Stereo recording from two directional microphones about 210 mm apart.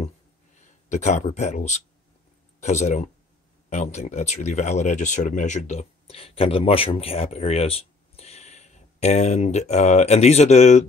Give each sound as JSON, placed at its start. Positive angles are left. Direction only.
{"t": 0.8, "sound": "speech", "side_deg": 35}